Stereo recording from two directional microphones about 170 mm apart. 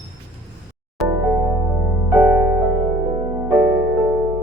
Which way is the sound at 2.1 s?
10° right (ahead or behind).